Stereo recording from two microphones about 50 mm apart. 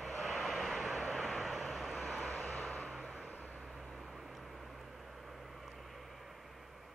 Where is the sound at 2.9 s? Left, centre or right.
Centre.